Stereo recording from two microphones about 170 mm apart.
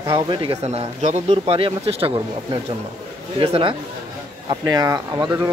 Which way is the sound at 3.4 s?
35° right (ahead or behind).